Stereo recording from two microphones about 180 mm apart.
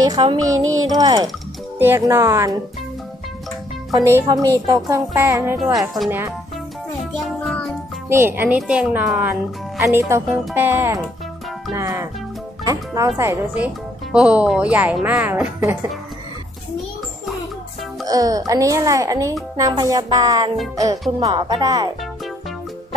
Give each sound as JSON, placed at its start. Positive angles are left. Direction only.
{"t": 0.0, "sound": "speech", "side_deg": -25}
{"t": 3.9, "sound": "speech", "side_deg": -15}
{"t": 7.2, "sound": "music", "side_deg": 5}
{"t": 8.1, "sound": "speech", "side_deg": -15}
{"t": 14.1, "sound": "speech", "side_deg": -5}
{"t": 18.0, "sound": "speech", "side_deg": -20}